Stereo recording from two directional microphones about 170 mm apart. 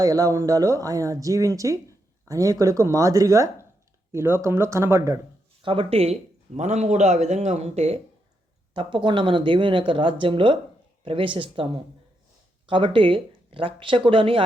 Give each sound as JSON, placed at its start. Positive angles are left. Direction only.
{"t": 0.0, "sound": "speech", "side_deg": -20}
{"t": 5.6, "sound": "speech", "side_deg": -30}
{"t": 8.7, "sound": "speech", "side_deg": -30}